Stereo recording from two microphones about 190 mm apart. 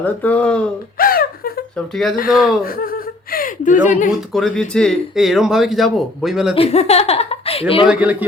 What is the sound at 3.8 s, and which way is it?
Speech, 40° left (ahead or behind).